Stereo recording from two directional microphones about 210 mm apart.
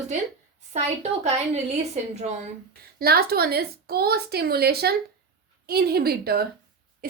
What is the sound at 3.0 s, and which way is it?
A woman's voice, 45° right (ahead or behind).